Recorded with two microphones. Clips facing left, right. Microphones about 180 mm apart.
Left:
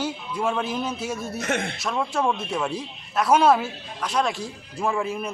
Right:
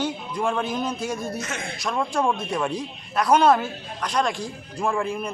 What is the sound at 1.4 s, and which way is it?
Speech, 55° left (ahead or behind).